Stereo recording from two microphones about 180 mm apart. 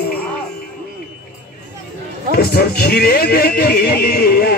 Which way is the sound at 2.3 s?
60° left (ahead or behind).